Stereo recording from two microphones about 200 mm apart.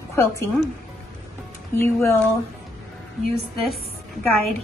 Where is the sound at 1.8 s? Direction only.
15° left (ahead or behind).